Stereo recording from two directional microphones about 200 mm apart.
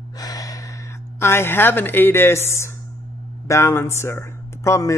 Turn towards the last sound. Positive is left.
turn(degrees=15)  # may be behind; listen again after turning